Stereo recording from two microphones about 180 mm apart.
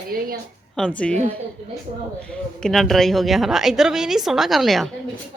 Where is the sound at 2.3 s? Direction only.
5° left (ahead or behind).